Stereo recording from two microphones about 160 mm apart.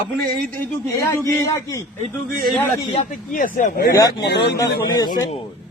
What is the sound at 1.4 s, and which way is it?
Speech, 20° left (ahead or behind).